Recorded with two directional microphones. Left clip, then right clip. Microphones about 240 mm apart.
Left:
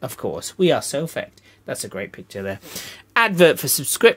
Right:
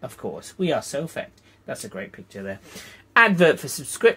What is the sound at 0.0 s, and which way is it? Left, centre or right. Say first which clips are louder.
Speech: left 6 dB; left.